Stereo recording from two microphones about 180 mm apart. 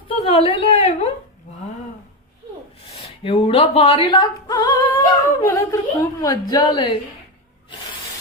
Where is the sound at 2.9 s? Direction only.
30° left (ahead or behind).